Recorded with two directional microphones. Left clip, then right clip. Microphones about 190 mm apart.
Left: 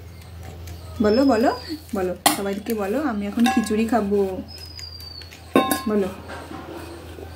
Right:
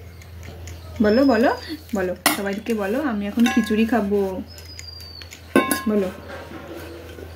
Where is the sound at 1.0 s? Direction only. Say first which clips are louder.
Right 1 dB; 15° right (ahead or behind).